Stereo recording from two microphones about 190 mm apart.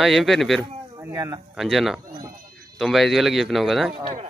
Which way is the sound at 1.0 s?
15° right (ahead or behind).